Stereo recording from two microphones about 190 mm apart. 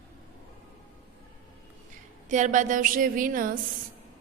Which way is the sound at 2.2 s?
40° right (ahead or behind).